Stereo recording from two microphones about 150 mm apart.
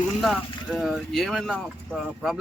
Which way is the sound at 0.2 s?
Centre (ahead or behind).